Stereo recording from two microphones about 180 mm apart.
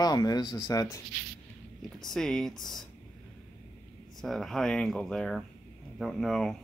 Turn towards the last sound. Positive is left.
turn(degrees=0)  # may be behind; listen again after turning